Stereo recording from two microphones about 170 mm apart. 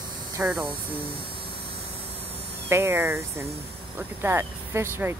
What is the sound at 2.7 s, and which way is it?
Speech, 15° right (ahead or behind).